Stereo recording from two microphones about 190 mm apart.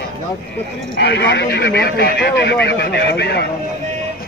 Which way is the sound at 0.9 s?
65° left (ahead or behind).